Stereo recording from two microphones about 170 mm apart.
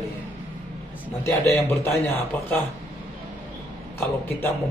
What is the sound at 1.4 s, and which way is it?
Speech, 15° left (ahead or behind).